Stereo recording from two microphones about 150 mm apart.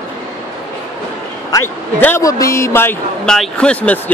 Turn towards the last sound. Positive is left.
turn(degrees=10)  # may be behind; listen again after turning